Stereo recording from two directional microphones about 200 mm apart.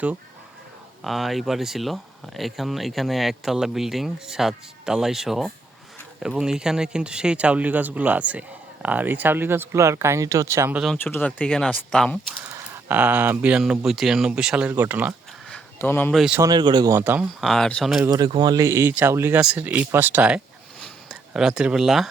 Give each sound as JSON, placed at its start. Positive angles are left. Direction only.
{"t": 1.0, "sound": "speech", "side_deg": 0}
{"t": 10.9, "sound": "speech", "side_deg": 10}
{"t": 15.4, "sound": "a sound", "side_deg": 10}
{"t": 16.4, "sound": "speech", "side_deg": -20}
{"t": 17.4, "sound": "speech", "side_deg": 0}
{"t": 18.1, "sound": "speech", "side_deg": -20}
{"t": 20.8, "sound": "a sound", "side_deg": -5}